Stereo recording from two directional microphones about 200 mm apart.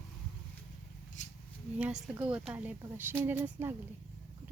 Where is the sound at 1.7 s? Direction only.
5° right (ahead or behind).